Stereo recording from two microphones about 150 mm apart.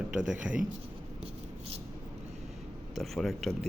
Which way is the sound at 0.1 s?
5° right (ahead or behind).